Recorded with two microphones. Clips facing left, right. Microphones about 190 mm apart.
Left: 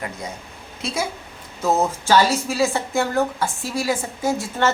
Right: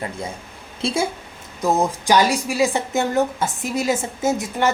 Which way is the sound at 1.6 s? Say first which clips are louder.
Right 1 dB; 15° right (ahead or behind).